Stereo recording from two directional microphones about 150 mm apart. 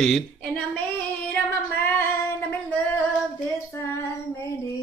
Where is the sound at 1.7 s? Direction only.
15° left (ahead or behind).